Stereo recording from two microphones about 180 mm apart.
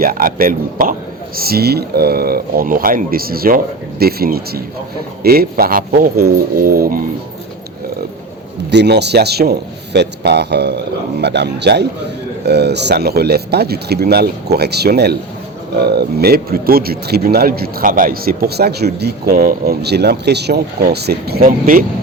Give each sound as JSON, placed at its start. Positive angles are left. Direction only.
{"t": 0.0, "sound": "a man's voice", "side_deg": -55}
{"t": 8.7, "sound": "a man's voice", "side_deg": -70}